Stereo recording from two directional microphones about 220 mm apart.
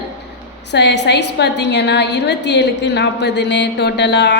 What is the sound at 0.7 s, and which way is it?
A woman's voice, 50° left (ahead or behind).